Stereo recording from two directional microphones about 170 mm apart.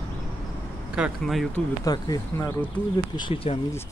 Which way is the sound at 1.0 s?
Centre (ahead or behind).